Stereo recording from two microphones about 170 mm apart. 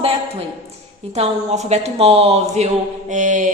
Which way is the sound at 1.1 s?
40° right (ahead or behind).